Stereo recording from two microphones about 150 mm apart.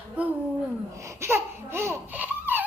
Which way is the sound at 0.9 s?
20° right (ahead or behind).